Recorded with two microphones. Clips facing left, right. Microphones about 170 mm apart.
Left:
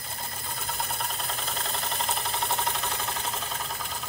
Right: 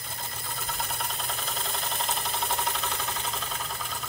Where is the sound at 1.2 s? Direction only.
Centre (ahead or behind).